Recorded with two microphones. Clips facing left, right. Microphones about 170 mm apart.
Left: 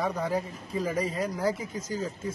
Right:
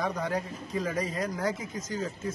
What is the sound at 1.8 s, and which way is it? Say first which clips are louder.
Speech: left 1 dB; 30° left (ahead or behind).